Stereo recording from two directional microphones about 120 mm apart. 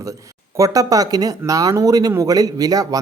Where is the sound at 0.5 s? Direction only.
30° right (ahead or behind).